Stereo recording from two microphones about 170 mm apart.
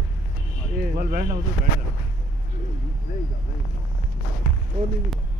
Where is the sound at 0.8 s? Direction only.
55° right (ahead or behind).